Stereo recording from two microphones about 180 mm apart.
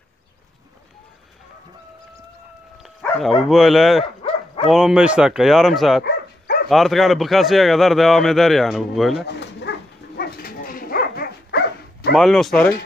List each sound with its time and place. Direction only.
2.8 s dog: centre (ahead or behind)
3.4 s a man's voice: centre (ahead or behind)
4.0 s dog: 30° left (ahead or behind)
4.6 s a man's voice: centre (ahead or behind)
6.0 s dog: 60° left (ahead or behind)
6.7 s a man's voice: centre (ahead or behind)
9.2 s bow-wow: 70° left (ahead or behind)
12.1 s a man's voice: centre (ahead or behind)